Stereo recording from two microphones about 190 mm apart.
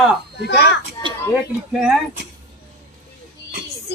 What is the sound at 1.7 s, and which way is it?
Speech, 5° right (ahead or behind).